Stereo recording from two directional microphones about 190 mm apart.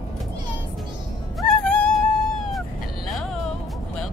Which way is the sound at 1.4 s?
5° left (ahead or behind).